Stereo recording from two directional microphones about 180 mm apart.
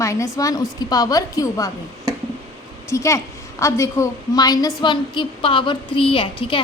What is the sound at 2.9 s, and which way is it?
A woman's voice, 15° left (ahead or behind).